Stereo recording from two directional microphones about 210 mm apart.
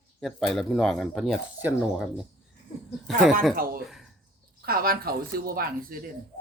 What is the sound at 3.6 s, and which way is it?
Speech, 45° right (ahead or behind).